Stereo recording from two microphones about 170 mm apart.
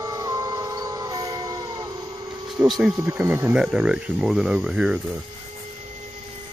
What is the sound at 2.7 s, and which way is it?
Speech, centre (ahead or behind).